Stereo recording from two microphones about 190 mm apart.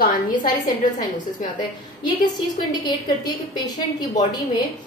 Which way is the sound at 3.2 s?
20° left (ahead or behind).